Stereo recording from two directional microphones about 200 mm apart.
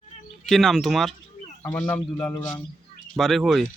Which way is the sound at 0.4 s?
Centre (ahead or behind).